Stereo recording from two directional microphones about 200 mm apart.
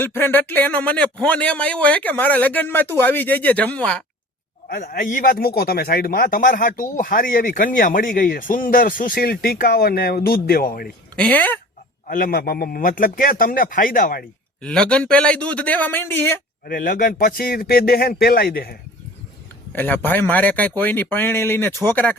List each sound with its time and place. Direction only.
0.0 s a man's voice: 10° left (ahead or behind)
4.7 s speech: 40° left (ahead or behind)
11.2 s a man's voice: 5° left (ahead or behind)
12.0 s speech: 45° left (ahead or behind)
14.6 s a man's voice: 5° left (ahead or behind)
16.6 s speech: 45° left (ahead or behind)
19.7 s a man's voice: 10° left (ahead or behind)